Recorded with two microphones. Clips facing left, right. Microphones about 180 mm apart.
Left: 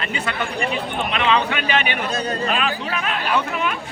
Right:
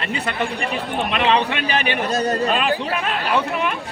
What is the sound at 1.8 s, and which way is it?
Speech, 40° right (ahead or behind).